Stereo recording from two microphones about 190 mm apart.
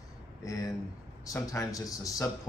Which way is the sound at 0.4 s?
15° left (ahead or behind).